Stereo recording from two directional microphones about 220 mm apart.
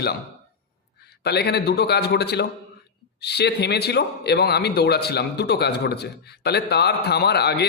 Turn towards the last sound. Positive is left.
turn(degrees=50)  # may be behind; listen again after turning